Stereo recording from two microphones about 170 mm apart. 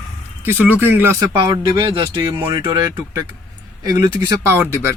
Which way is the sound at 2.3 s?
15° right (ahead or behind).